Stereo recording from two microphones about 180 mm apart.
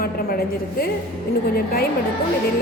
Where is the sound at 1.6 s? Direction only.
55° left (ahead or behind).